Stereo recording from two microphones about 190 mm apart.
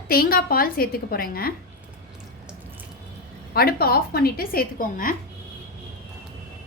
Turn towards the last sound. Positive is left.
turn(degrees=45)  # may be behind; listen again after turning